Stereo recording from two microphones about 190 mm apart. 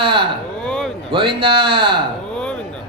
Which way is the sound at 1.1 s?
25° right (ahead or behind).